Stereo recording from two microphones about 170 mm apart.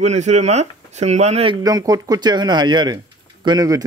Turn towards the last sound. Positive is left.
turn(degrees=-20)  # may be behind; listen again after turning